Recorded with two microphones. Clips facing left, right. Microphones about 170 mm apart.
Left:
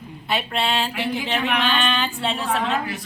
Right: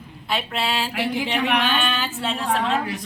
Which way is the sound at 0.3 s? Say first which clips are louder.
Left 1 dB; centre (ahead or behind).